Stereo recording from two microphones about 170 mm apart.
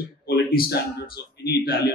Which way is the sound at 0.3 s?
60° left (ahead or behind).